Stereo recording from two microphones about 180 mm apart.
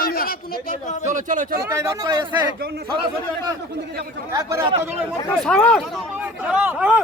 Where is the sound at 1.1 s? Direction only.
45° right (ahead or behind).